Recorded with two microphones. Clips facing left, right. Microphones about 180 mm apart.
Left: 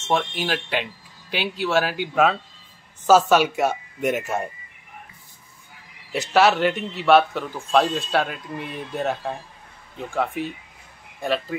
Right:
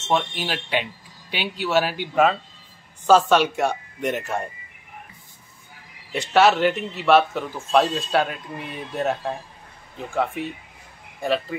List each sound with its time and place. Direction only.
0.1 s a man's voice: centre (ahead or behind)
6.1 s a man's voice: centre (ahead or behind)